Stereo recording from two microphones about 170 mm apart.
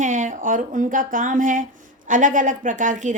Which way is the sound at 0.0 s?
50° right (ahead or behind).